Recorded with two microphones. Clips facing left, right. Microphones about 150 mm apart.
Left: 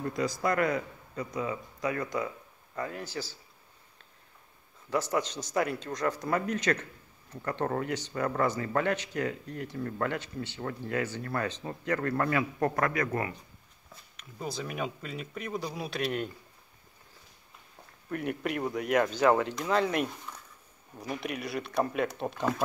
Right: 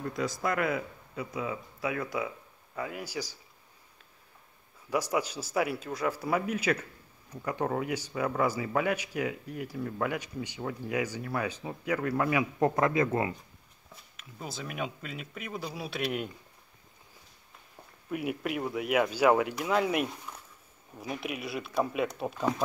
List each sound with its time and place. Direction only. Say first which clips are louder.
0.0 s speech: left 2 dB; centre (ahead or behind)
4.8 s a man's voice: even; 10° right (ahead or behind)
14.1 s speech: left 4 dB; centre (ahead or behind)
18.1 s a man's voice: even; 5° right (ahead or behind)